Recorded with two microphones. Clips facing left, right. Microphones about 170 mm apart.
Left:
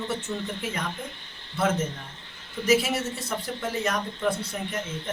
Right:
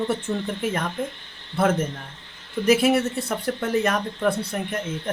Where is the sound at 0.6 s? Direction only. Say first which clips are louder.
Right 6 dB; 55° right (ahead or behind).